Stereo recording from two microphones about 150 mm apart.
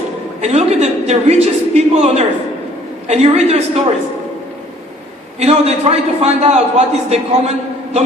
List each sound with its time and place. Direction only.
0.4 s a man's voice: 50° right (ahead or behind)
5.4 s a man's voice: 45° right (ahead or behind)